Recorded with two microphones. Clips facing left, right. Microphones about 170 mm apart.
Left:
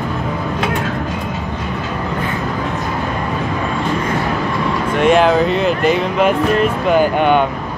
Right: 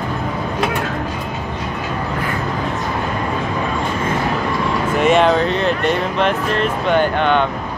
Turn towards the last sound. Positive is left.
turn(degrees=10)  # may be behind; listen again after turning